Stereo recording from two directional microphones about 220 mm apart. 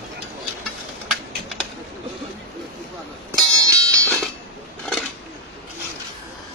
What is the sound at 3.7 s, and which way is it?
Music, 15° right (ahead or behind).